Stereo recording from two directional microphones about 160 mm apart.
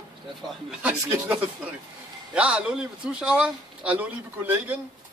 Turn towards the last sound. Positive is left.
turn(degrees=-10)  # may be behind; listen again after turning